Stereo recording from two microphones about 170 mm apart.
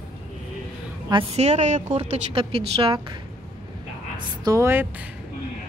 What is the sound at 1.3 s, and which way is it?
Speech, 40° right (ahead or behind).